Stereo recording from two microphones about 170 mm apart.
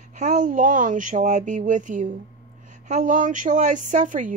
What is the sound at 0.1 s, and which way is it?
Speech, 45° right (ahead or behind).